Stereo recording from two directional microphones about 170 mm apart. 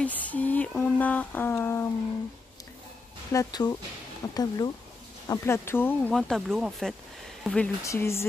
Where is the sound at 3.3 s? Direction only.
25° left (ahead or behind); by 7.7 s 5° left (ahead or behind).